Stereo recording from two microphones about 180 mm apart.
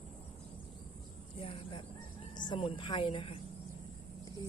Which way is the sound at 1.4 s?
30° left (ahead or behind).